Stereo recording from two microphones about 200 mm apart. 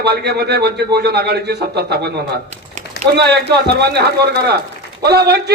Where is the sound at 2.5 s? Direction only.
35° right (ahead or behind).